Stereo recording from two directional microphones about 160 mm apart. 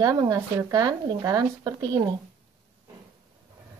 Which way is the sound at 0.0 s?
25° right (ahead or behind).